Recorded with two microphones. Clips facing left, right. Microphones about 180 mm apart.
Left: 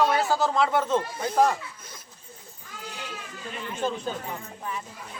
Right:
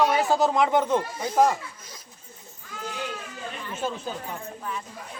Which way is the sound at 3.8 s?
5° right (ahead or behind).